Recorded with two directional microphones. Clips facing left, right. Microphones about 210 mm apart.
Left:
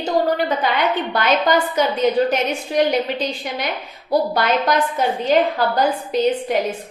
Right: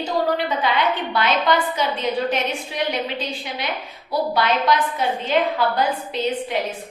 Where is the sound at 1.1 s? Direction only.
45° left (ahead or behind).